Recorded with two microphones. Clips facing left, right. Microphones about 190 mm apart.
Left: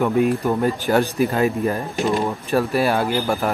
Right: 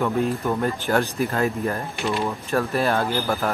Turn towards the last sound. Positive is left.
turn(degrees=15)  # may be behind; listen again after turning